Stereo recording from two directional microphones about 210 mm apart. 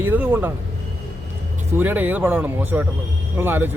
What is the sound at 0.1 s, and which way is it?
Speech, 10° right (ahead or behind).